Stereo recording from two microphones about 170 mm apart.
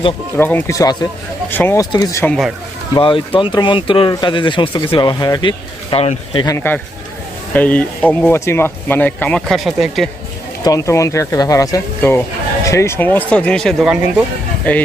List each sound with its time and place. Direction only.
0.3 s speech: 10° left (ahead or behind)
2.2 s speech: 5° left (ahead or behind)
2.9 s speech: 30° left (ahead or behind)
6.4 s speech: 15° left (ahead or behind); by 10.1 s centre (ahead or behind)
10.6 s speech: 20° left (ahead or behind)